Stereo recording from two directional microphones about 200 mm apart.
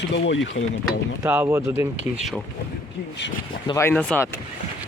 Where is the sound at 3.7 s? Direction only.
10° left (ahead or behind).